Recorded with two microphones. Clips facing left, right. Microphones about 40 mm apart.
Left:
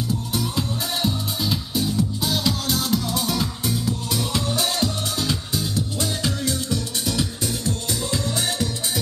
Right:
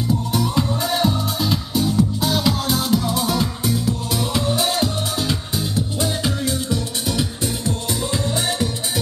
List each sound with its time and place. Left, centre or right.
0.3 s music: centre
4.1 s music: right